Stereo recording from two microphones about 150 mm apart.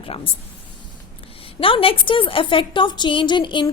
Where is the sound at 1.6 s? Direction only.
35° left (ahead or behind).